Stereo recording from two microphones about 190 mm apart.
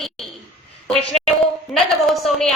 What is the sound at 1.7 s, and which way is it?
Speech, centre (ahead or behind).